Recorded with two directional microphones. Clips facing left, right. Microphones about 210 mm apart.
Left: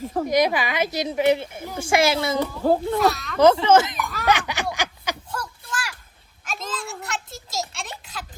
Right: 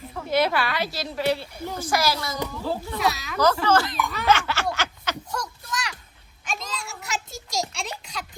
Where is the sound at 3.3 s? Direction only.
25° left (ahead or behind).